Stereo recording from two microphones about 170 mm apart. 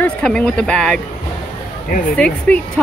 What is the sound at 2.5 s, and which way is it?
Speech, 10° left (ahead or behind).